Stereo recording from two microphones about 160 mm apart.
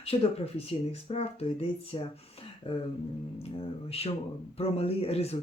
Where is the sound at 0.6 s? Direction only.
40° left (ahead or behind).